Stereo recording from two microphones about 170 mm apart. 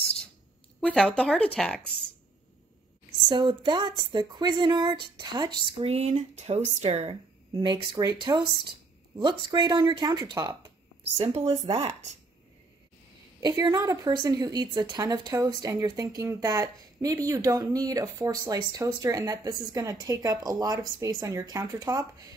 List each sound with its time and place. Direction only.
0.7 s speech: 5° left (ahead or behind)
3.3 s speech: 25° right (ahead or behind)
5.9 s speech: 40° right (ahead or behind); by 10.6 s 20° right (ahead or behind)
13.4 s speech: 25° right (ahead or behind)